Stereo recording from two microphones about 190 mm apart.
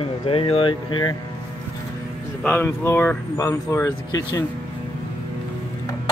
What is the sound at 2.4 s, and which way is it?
Speech, 10° left (ahead or behind).